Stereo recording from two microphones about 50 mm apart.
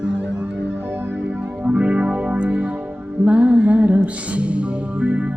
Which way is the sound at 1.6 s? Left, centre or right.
Right.